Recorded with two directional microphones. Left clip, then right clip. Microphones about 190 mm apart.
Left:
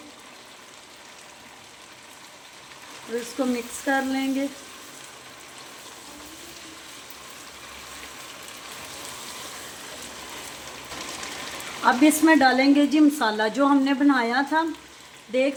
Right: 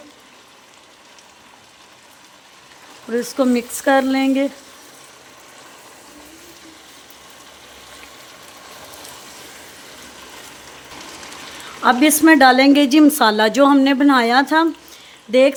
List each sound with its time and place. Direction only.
3.4 s speech: 65° right (ahead or behind)
11.8 s a woman's voice: 45° right (ahead or behind); by 15.5 s 65° right (ahead or behind)